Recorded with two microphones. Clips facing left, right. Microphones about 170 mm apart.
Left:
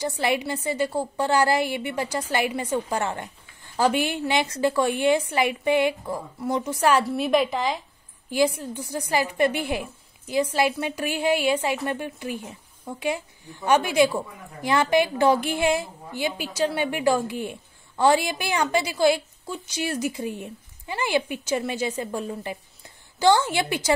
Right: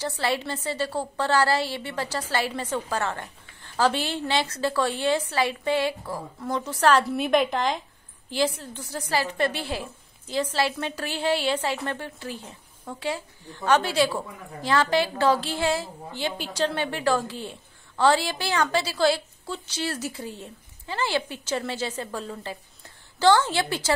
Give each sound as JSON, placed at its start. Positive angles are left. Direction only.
{"t": 0.0, "sound": "a woman's voice", "side_deg": 15}
{"t": 7.1, "sound": "a woman's voice", "side_deg": 0}
{"t": 8.3, "sound": "a woman's voice", "side_deg": 15}